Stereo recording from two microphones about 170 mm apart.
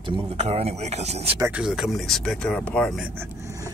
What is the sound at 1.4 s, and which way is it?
Speech, 5° right (ahead or behind).